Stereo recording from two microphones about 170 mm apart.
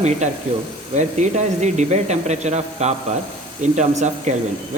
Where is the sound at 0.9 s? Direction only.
45° right (ahead or behind).